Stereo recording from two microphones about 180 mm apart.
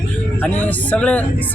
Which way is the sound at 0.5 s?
10° left (ahead or behind).